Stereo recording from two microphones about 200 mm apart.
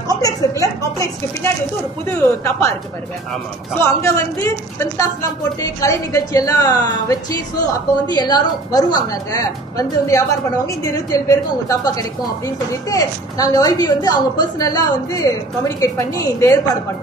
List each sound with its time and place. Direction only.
0.1 s speech: 15° left (ahead or behind)
3.8 s a woman's voice: 15° left (ahead or behind)